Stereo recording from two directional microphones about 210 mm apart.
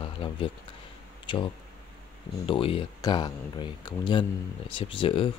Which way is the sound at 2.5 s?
25° left (ahead or behind).